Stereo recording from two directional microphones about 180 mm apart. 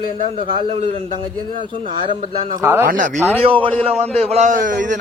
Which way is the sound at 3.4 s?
30° right (ahead or behind).